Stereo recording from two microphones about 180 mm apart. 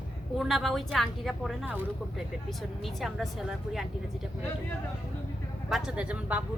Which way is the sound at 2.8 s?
Centre (ahead or behind).